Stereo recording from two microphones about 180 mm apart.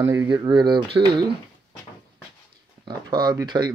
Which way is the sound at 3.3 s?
25° right (ahead or behind).